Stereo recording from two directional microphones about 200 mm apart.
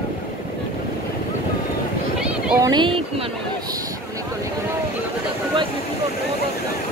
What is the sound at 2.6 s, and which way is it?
Speech, 20° right (ahead or behind).